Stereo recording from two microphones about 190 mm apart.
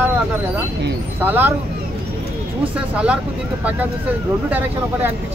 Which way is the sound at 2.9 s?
5° right (ahead or behind).